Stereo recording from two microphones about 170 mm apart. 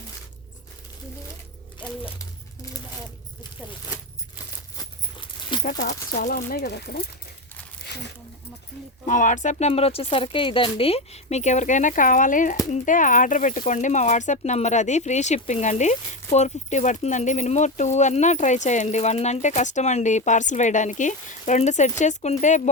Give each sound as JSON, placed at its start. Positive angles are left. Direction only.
{"t": 5.6, "sound": "speech", "side_deg": 50}
{"t": 6.1, "sound": "speech", "side_deg": 60}
{"t": 7.9, "sound": "zipper", "side_deg": 80}
{"t": 9.0, "sound": "speech", "side_deg": 45}